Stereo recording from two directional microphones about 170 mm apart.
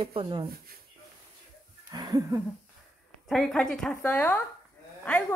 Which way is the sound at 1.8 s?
25° right (ahead or behind).